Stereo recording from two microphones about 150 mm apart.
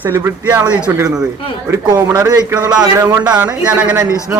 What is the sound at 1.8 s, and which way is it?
Speech, 25° right (ahead or behind).